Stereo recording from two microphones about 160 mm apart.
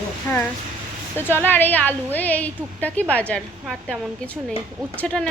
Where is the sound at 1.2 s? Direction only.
10° left (ahead or behind).